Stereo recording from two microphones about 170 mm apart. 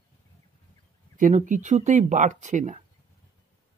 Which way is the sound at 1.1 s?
50° right (ahead or behind).